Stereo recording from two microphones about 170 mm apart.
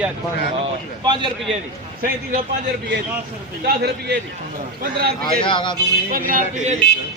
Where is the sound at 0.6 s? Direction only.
30° right (ahead or behind).